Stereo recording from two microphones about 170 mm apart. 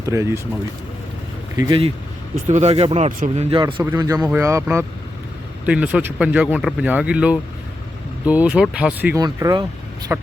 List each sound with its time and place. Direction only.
0.0 s speech: 20° right (ahead or behind)
1.5 s speech: 20° right (ahead or behind)
2.5 s speech: 40° right (ahead or behind)
3.1 s speech: 55° right (ahead or behind)
3.4 s speech: 30° right (ahead or behind); by 9.1 s 10° right (ahead or behind)
9.1 s speech: 20° right (ahead or behind)
10.1 s speech: 10° right (ahead or behind)